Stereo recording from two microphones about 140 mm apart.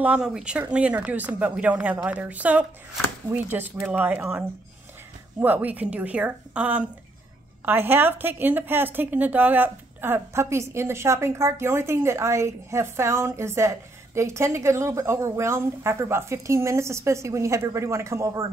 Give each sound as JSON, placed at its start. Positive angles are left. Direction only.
{"t": 0.0, "sound": "a woman's voice", "side_deg": -5}